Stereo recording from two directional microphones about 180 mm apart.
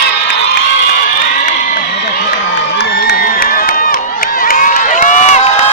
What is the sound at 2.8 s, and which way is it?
Crowd, 65° left (ahead or behind).